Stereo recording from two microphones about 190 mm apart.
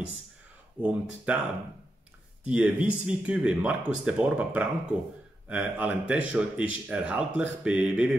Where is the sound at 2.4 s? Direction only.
5° right (ahead or behind).